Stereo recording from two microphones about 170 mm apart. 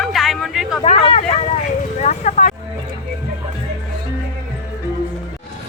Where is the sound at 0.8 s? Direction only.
35° left (ahead or behind).